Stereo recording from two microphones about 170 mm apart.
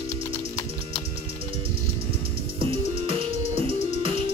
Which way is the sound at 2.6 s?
35° right (ahead or behind).